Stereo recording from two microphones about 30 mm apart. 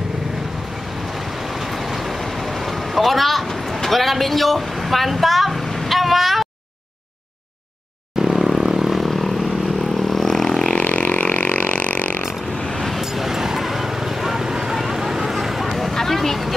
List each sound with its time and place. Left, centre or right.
2.6 s vehicle: centre
8.2 s vehicle: centre
10.8 s vehicle: left
13.0 s vehicle: centre
15.9 s vehicle: centre